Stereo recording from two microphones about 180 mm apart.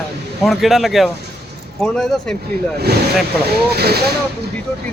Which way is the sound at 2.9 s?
65° right (ahead or behind).